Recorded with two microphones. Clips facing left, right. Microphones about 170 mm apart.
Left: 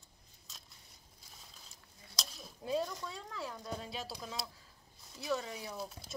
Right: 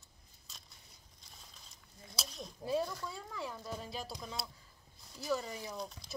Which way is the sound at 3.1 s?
Centre (ahead or behind).